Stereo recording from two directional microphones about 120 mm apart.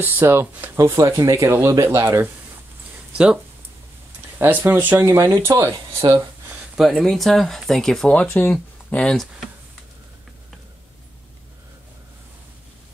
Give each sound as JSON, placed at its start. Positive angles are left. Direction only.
{"t": 0.0, "sound": "speech", "side_deg": -20}
{"t": 4.4, "sound": "speech", "side_deg": -15}
{"t": 5.9, "sound": "speech", "side_deg": -35}
{"t": 6.8, "sound": "speech", "side_deg": 5}